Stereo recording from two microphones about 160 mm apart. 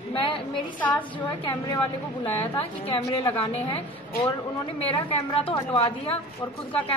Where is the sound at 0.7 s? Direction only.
10° left (ahead or behind).